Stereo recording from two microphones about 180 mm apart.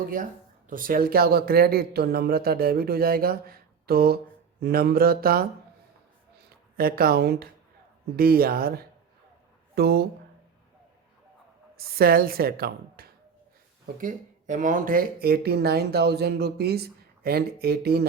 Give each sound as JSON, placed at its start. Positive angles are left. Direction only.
{"t": 0.7, "sound": "speech", "side_deg": -50}
{"t": 6.7, "sound": "speech", "side_deg": -55}
{"t": 11.8, "sound": "a woman's voice", "side_deg": -55}
{"t": 14.0, "sound": "speech", "side_deg": -45}